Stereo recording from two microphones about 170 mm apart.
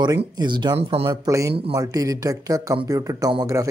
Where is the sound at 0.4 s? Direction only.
25° right (ahead or behind).